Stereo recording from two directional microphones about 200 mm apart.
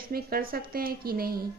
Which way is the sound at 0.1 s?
50° right (ahead or behind).